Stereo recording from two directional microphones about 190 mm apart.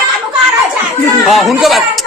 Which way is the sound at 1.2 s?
Centre (ahead or behind).